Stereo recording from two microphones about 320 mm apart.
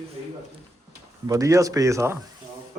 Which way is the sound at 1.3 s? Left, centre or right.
Centre.